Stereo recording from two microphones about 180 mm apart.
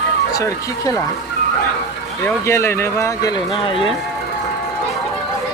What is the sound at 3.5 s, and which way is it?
Speech, 30° left (ahead or behind).